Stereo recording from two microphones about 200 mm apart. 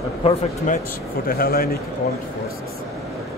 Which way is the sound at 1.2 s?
50° left (ahead or behind).